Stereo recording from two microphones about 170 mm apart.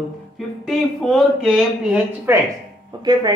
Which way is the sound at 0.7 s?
Centre (ahead or behind).